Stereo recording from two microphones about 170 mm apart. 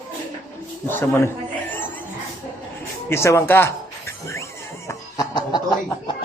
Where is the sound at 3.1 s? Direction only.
15° left (ahead or behind).